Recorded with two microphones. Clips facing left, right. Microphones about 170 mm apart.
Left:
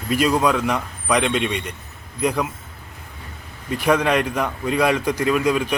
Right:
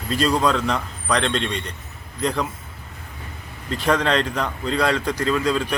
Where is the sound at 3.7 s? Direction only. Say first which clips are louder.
Left 2 dB; 10° left (ahead or behind).